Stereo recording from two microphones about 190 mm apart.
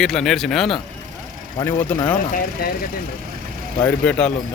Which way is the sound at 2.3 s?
45° left (ahead or behind).